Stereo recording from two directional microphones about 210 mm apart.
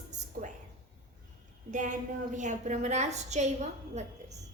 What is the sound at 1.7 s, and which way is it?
A woman's voice, 35° right (ahead or behind).